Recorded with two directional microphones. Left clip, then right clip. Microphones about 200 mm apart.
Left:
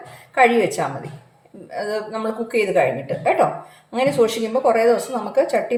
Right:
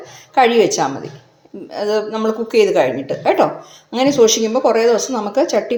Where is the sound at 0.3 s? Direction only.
30° right (ahead or behind).